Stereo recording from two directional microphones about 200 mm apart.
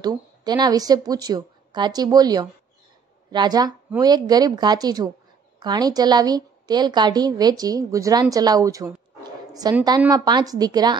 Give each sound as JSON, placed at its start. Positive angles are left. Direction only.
{"t": 0.0, "sound": "a woman's voice", "side_deg": -20}